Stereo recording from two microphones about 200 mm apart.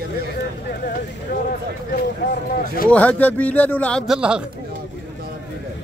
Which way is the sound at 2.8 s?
5° left (ahead or behind).